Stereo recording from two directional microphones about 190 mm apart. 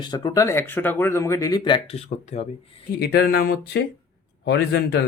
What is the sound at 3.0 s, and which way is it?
Speech, 55° left (ahead or behind).